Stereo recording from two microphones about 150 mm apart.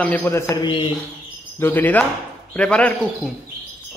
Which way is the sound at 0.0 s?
10° left (ahead or behind).